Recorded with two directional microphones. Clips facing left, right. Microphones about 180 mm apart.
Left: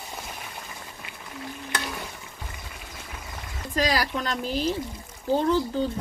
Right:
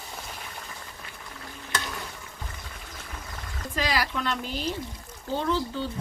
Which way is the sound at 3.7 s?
40° left (ahead or behind).